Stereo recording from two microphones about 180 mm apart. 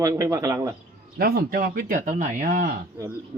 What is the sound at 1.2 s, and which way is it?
Speech, 55° right (ahead or behind).